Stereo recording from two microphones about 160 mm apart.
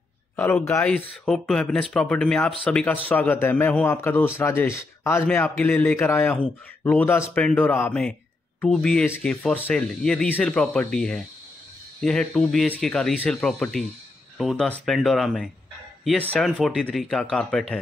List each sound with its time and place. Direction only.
0.4 s a man's voice: 10° left (ahead or behind)